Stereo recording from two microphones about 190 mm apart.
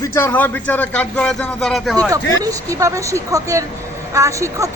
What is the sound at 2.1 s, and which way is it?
A woman's voice, 15° right (ahead or behind).